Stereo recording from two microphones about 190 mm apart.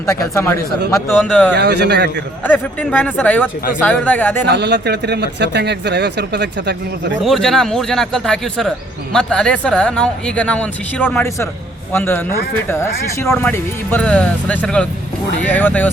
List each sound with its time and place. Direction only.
0.0 s speech: 15° left (ahead or behind)
1.5 s speech: 60° right (ahead or behind)
2.4 s speech: 10° left (ahead or behind)
4.4 s speech: 65° right (ahead or behind)
7.3 s speech: centre (ahead or behind)